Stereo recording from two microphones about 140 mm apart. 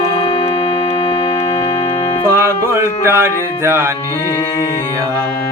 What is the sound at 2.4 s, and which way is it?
Music, 20° right (ahead or behind).